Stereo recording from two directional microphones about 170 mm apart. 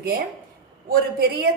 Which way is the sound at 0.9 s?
65° right (ahead or behind).